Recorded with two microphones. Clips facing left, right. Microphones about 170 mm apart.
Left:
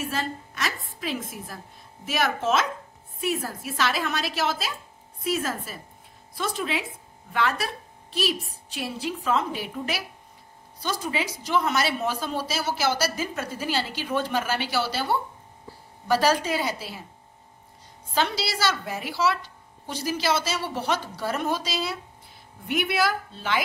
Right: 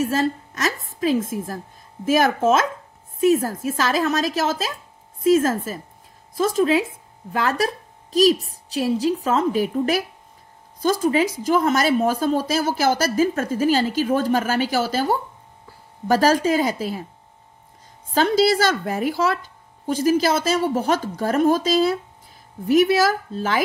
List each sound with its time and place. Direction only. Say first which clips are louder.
0.0 s a woman's voice: right 9 dB; 40° right (ahead or behind)
18.1 s a woman's voice: right 10 dB; 50° right (ahead or behind)